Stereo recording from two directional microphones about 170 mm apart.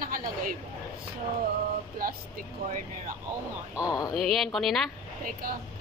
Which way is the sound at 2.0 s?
55° right (ahead or behind).